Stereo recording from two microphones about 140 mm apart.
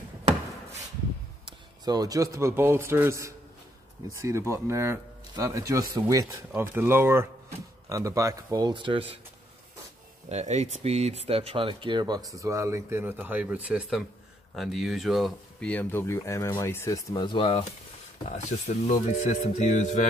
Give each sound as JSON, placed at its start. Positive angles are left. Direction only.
{"t": 1.4, "sound": "a man's voice", "side_deg": -30}
{"t": 10.3, "sound": "speech", "side_deg": -55}
{"t": 15.7, "sound": "speech", "side_deg": 15}
{"t": 18.3, "sound": "speech", "side_deg": 55}